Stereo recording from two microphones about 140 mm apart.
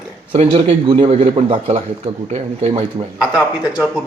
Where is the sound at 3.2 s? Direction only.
10° right (ahead or behind).